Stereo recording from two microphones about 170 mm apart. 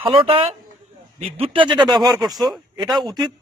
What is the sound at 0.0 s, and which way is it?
A man's voice, 35° right (ahead or behind).